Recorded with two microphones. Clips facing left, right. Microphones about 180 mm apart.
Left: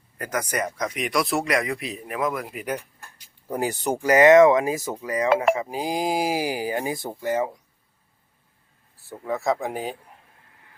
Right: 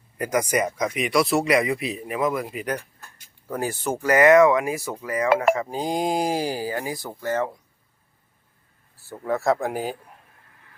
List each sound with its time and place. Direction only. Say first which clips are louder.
0.2 s speech: right 4 dB; 10° right (ahead or behind); by 2.8 s 5° left (ahead or behind)
3.5 s speech: left 1 dB; 15° left (ahead or behind)
5.5 s speech: right 1 dB; 10° left (ahead or behind)
9.0 s speech: right 3 dB; centre (ahead or behind)